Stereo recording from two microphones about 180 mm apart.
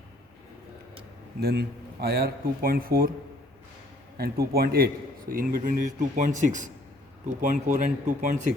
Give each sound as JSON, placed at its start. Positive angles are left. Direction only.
{"t": 1.4, "sound": "a man's voice", "side_deg": -60}
{"t": 4.2, "sound": "a man's voice", "side_deg": -60}